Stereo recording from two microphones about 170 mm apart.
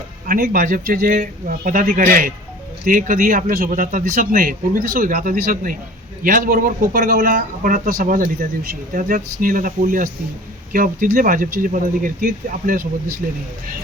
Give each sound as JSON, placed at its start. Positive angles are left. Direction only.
{"t": 0.3, "sound": "speech", "side_deg": -60}